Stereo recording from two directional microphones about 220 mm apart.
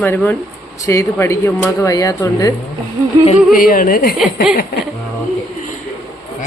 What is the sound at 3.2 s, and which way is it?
Speech, 40° left (ahead or behind).